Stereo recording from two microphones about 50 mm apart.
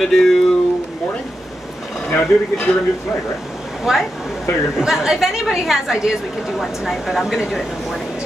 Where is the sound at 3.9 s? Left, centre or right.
Centre.